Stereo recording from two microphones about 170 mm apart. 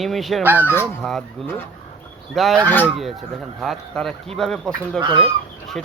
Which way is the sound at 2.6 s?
10° left (ahead or behind).